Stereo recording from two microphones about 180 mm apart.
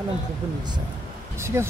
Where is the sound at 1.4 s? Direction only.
15° right (ahead or behind).